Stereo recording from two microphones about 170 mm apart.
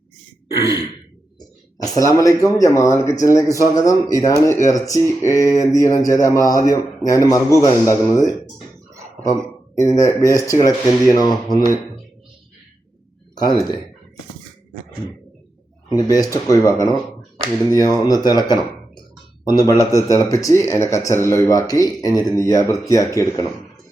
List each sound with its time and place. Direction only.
1.8 s a man's voice: 20° left (ahead or behind)
9.7 s a man's voice: 20° left (ahead or behind)
13.3 s speech: 25° left (ahead or behind)
16.0 s a man's voice: 20° left (ahead or behind)
17.7 s a man's voice: 20° left (ahead or behind)